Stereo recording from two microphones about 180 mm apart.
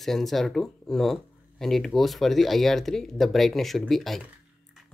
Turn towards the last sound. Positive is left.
turn(degrees=0)  # may be behind; listen again after turning